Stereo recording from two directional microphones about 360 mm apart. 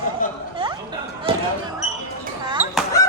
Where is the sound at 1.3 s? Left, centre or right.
Centre.